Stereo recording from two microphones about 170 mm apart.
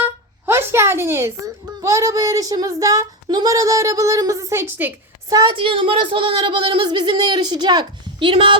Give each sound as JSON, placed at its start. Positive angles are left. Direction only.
{"t": 0.0, "sound": "a child's voice", "side_deg": -15}
{"t": 5.3, "sound": "a woman's voice", "side_deg": -25}